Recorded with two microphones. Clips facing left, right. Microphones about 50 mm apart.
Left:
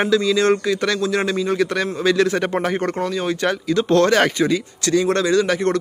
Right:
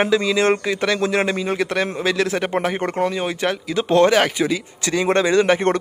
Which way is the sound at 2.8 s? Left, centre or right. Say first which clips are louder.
Right 1 dB; right.